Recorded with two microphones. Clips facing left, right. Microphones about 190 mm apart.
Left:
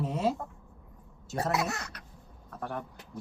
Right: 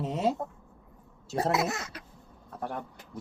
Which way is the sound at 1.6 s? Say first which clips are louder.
Right 3 dB; 20° right (ahead or behind).